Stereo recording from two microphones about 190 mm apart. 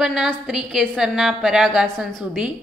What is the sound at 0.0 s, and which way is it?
A woman's voice, centre (ahead or behind).